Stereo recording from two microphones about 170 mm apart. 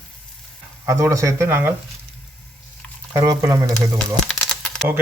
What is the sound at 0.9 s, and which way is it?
Speech, 15° right (ahead or behind).